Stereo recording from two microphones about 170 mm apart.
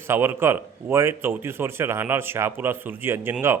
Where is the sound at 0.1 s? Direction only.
15° right (ahead or behind).